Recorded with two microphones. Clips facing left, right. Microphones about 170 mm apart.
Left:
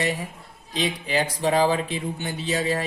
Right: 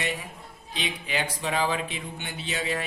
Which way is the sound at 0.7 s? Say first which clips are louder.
Left 6 dB; 35° left (ahead or behind).